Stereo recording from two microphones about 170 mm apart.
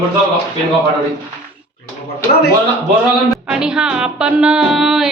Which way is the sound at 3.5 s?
5° right (ahead or behind).